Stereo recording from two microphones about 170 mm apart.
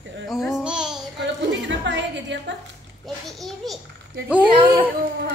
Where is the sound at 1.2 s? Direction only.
90° right.